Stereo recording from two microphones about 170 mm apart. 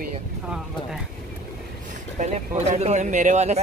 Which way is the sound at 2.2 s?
40° right (ahead or behind).